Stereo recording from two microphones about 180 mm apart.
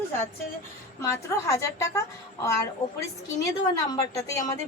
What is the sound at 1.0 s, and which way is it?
Speech, 15° left (ahead or behind).